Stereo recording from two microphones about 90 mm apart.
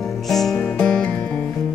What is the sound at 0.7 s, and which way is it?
Music, 15° left (ahead or behind).